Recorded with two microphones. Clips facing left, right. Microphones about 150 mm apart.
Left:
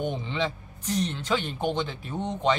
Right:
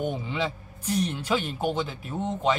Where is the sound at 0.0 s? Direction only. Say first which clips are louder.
Even; 10° right (ahead or behind).